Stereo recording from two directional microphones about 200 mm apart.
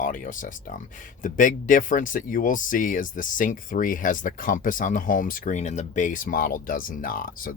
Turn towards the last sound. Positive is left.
turn(degrees=45)  # may be behind; listen again after turning